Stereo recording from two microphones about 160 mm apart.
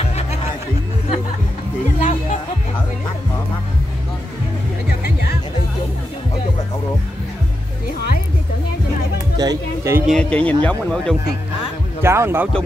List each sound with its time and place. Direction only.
2.0 s music: 45° left (ahead or behind)
9.4 s music: 20° right (ahead or behind)
10.0 s speech: 5° left (ahead or behind)
12.0 s speech: 15° right (ahead or behind)